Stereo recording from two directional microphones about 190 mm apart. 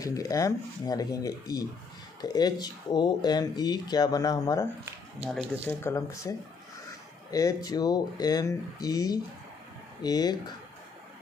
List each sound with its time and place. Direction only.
0.0 s speech: 15° left (ahead or behind)
5.2 s speech: 5° right (ahead or behind)
5.7 s speech: 15° left (ahead or behind)